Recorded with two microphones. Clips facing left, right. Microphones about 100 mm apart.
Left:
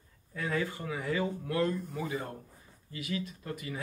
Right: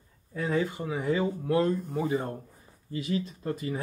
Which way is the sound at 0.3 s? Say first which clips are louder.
Right 5 dB; 25° right (ahead or behind).